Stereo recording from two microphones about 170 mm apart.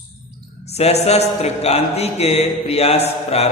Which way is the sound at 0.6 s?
40° left (ahead or behind).